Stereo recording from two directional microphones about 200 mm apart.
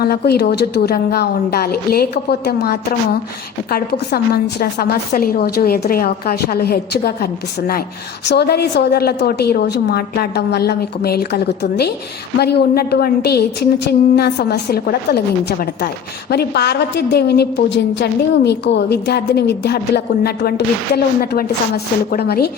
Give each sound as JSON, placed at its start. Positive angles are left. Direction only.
{"t": 0.0, "sound": "a woman's voice", "side_deg": 55}
{"t": 3.7, "sound": "a woman's voice", "side_deg": 50}
{"t": 8.3, "sound": "a woman's voice", "side_deg": 55}
{"t": 20.9, "sound": "a woman's voice", "side_deg": 50}